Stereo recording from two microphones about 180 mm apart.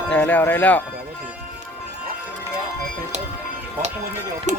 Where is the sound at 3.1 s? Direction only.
40° right (ahead or behind).